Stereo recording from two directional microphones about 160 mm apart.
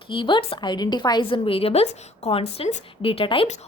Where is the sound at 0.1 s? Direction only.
30° left (ahead or behind).